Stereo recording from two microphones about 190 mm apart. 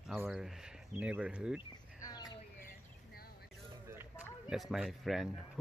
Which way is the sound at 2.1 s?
20° left (ahead or behind).